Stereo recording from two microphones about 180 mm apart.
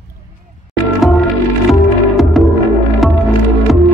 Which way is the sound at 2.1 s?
Centre (ahead or behind).